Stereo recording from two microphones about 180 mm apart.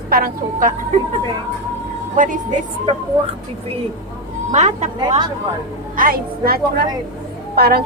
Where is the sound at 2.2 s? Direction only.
45° right (ahead or behind).